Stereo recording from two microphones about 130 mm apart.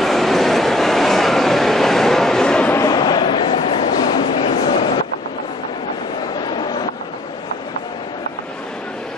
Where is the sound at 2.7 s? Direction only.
25° left (ahead or behind).